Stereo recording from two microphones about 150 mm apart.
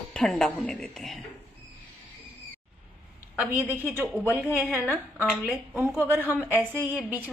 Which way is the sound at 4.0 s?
10° right (ahead or behind).